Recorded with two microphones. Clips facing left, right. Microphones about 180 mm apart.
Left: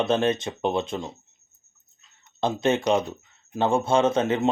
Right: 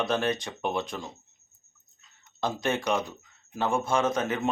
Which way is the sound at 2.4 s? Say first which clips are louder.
Left 6 dB; 25° left (ahead or behind).